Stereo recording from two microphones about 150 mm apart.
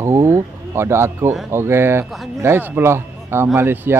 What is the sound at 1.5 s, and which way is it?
A man's voice, 15° right (ahead or behind).